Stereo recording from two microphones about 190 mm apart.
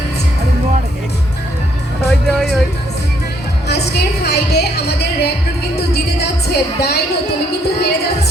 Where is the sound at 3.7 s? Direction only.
60° left (ahead or behind).